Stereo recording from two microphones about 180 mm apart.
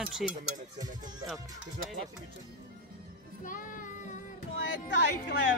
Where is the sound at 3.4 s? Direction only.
45° left (ahead or behind).